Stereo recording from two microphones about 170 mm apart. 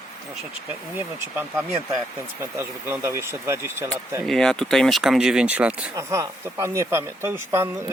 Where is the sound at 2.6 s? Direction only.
15° right (ahead or behind).